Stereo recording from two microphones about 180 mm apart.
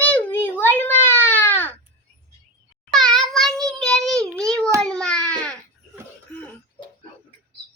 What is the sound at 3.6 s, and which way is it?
Child singing, 5° left (ahead or behind).